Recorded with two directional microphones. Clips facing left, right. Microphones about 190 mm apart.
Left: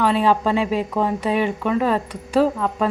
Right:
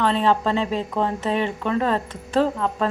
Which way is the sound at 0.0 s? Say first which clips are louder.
Left 2 dB; 10° left (ahead or behind).